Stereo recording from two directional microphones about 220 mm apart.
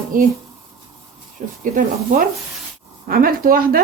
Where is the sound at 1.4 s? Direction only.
35° right (ahead or behind).